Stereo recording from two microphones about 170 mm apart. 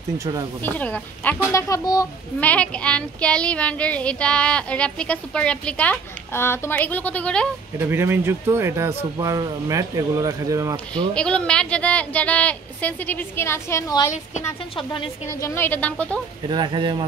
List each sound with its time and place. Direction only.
0.2 s speech: 20° right (ahead or behind)
0.6 s speech: 10° left (ahead or behind)
2.4 s speech: 5° left (ahead or behind)
7.8 s speech: 15° right (ahead or behind)
11.1 s speech: 5° left (ahead or behind)
15.2 s speech: 15° left (ahead or behind)
16.4 s speech: 25° right (ahead or behind)